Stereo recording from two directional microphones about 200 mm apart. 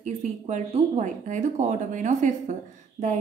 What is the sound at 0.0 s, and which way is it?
A woman's voice, 35° right (ahead or behind).